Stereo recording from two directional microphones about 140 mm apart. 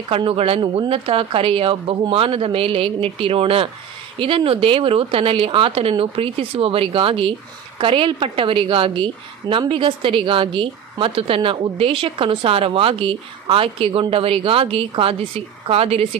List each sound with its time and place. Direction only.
0.1 s a woman's voice: 40° right (ahead or behind)